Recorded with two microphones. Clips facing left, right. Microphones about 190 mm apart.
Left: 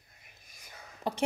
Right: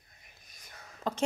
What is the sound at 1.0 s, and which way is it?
Speech, 15° left (ahead or behind).